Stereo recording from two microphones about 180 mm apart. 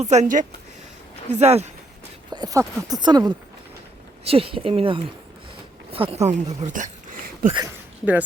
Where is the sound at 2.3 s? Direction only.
20° right (ahead or behind); by 7.5 s 45° right (ahead or behind).